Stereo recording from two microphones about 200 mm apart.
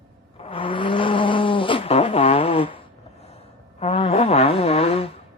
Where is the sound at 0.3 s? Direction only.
25° left (ahead or behind).